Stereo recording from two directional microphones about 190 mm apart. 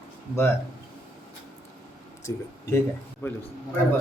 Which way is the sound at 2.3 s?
15° left (ahead or behind).